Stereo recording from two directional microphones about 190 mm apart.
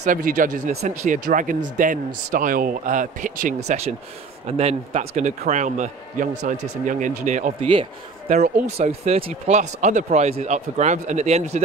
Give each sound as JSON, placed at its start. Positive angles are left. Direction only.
{"t": 0.0, "sound": "a man's voice", "side_deg": -45}
{"t": 7.6, "sound": "a man's voice", "side_deg": -25}